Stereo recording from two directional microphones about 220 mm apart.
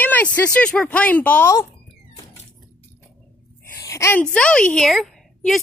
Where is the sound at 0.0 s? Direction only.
5° left (ahead or behind).